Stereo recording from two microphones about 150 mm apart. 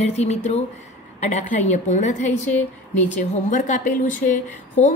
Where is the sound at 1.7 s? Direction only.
50° left (ahead or behind).